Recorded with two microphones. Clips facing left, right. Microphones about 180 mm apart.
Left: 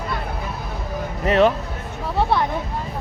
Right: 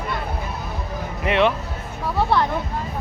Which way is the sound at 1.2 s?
40° left (ahead or behind).